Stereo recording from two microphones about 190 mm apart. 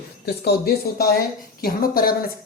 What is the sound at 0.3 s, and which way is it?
Speech, 55° left (ahead or behind).